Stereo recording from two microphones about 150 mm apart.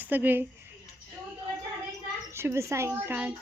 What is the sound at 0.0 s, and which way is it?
Speech, 10° right (ahead or behind).